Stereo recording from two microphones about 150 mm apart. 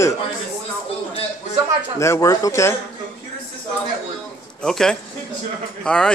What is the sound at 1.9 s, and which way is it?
Speech, 20° left (ahead or behind).